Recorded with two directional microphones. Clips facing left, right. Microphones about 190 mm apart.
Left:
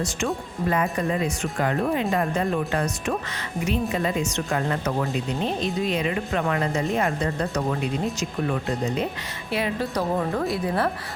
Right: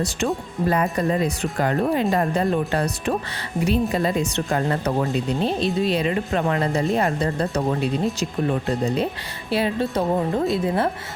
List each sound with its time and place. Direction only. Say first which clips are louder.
0.7 s speech: right 3 dB; 35° right (ahead or behind)